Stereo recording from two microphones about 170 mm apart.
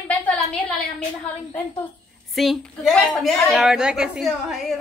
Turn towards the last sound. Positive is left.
turn(degrees=0)  # may be behind; listen again after turning